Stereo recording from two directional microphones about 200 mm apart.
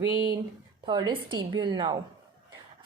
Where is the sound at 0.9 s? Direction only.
20° right (ahead or behind).